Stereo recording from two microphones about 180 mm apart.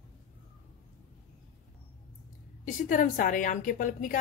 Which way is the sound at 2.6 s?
45° left (ahead or behind).